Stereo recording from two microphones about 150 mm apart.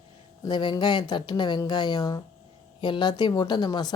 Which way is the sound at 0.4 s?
30° left (ahead or behind).